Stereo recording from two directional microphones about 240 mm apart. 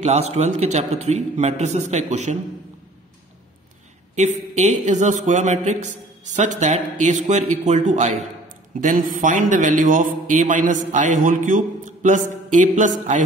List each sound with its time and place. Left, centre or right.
0.0 s a man's voice: right
4.1 s a man's voice: right